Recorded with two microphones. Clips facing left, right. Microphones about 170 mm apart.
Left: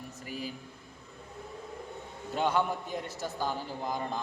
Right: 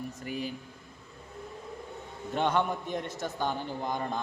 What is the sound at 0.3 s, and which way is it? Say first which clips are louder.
Speech: right 3 dB; 55° right (ahead or behind).